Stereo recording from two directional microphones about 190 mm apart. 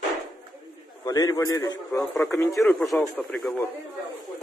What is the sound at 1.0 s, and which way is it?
A man's voice, 20° left (ahead or behind).